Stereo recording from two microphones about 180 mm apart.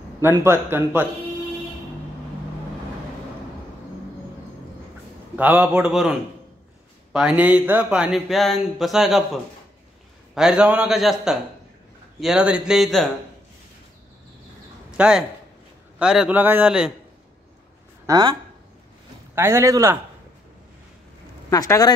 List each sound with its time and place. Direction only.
0.2 s a man's voice: 15° right (ahead or behind)
5.3 s a man's voice: 10° right (ahead or behind)
14.9 s speech: 5° right (ahead or behind)
18.0 s a man's voice: 20° right (ahead or behind)
21.5 s speech: 20° left (ahead or behind)